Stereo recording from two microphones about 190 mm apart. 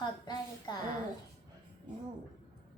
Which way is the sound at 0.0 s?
20° left (ahead or behind).